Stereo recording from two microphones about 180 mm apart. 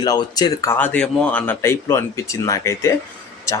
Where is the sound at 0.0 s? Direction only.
20° left (ahead or behind).